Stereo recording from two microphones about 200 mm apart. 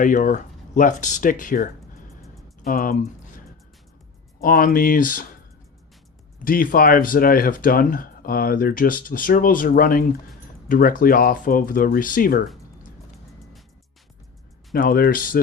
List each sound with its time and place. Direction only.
0.0 s speech: 40° left (ahead or behind)
6.4 s speech: 45° left (ahead or behind)
14.7 s speech: 50° left (ahead or behind)